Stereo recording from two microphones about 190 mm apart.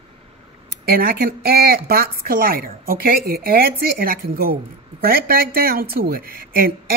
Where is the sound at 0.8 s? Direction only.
55° right (ahead or behind).